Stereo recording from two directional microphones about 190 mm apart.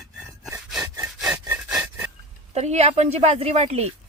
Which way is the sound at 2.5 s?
35° right (ahead or behind).